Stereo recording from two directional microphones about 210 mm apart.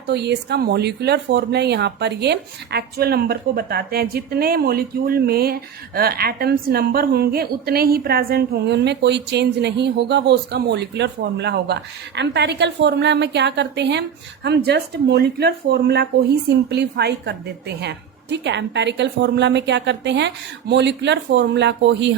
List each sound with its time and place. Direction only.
0.1 s a woman's voice: 50° right (ahead or behind)